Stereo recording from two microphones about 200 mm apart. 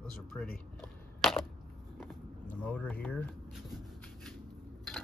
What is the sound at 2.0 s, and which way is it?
Vehicle, 5° left (ahead or behind).